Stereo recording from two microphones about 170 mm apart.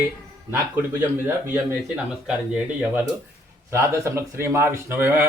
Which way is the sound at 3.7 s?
15° right (ahead or behind).